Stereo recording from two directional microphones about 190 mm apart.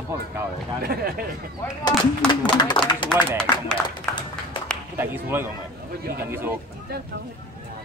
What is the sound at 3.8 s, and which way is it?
Speech, 10° left (ahead or behind).